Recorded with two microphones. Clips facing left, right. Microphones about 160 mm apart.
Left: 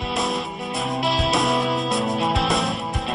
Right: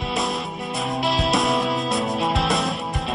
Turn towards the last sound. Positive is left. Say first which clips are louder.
# even
turn(degrees=0)  # may be behind; listen again after turning